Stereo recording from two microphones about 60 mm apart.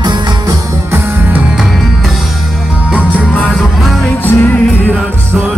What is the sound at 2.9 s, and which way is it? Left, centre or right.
Music, right.